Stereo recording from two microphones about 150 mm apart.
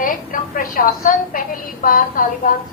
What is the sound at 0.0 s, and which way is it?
A woman's voice, 65° left (ahead or behind).